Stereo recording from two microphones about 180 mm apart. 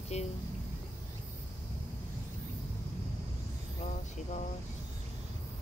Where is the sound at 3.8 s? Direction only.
40° left (ahead or behind).